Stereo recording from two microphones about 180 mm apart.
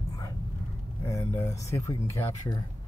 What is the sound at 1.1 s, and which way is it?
Speech, 15° left (ahead or behind).